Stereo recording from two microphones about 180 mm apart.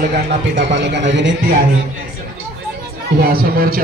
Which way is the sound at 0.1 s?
80° right.